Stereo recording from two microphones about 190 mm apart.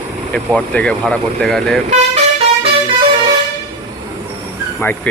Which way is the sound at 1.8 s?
35° right (ahead or behind).